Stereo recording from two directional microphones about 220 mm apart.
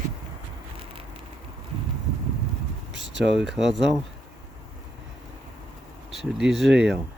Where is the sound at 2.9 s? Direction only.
55° right (ahead or behind).